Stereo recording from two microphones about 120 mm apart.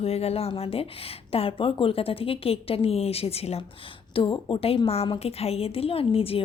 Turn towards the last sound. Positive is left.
turn(degrees=50)  # may be behind; listen again after turning